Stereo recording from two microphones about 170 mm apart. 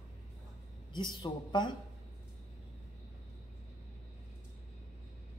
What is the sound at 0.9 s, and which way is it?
Speech, 25° left (ahead or behind).